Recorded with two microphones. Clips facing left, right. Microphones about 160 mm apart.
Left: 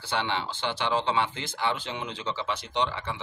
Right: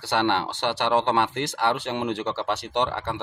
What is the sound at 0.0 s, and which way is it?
Speech, 70° right (ahead or behind).